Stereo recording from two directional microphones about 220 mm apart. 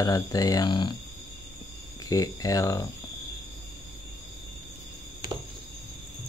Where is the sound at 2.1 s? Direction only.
15° left (ahead or behind).